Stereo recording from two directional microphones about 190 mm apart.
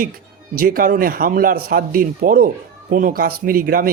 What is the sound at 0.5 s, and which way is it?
A man's voice, 50° right (ahead or behind).